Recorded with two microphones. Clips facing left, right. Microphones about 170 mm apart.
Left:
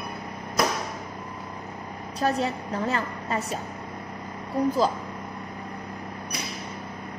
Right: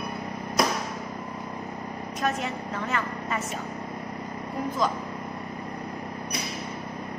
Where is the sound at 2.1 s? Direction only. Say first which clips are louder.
Left 4 dB; 35° left (ahead or behind).